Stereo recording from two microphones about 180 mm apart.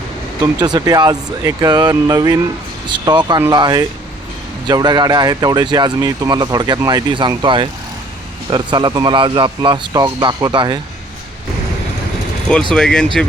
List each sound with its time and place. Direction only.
0.6 s speech: 20° right (ahead or behind)
12.7 s speech: 5° left (ahead or behind)